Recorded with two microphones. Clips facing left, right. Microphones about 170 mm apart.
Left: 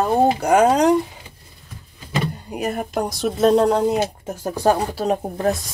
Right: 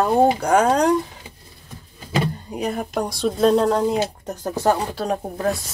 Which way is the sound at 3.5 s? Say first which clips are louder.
Left 2 dB; 15° left (ahead or behind).